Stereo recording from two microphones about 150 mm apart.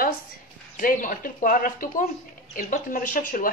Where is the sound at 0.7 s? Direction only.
65° left (ahead or behind).